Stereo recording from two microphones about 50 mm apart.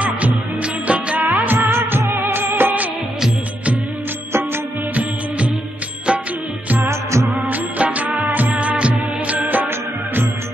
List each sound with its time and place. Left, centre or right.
0.6 s music: right
1.2 s music of bollywood: right
6.8 s music: right
7.4 s music: right